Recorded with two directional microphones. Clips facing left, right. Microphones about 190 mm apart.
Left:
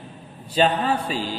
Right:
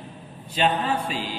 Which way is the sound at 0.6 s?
35° left (ahead or behind).